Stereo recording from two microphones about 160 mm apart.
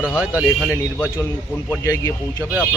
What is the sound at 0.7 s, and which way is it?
Speech, 15° left (ahead or behind).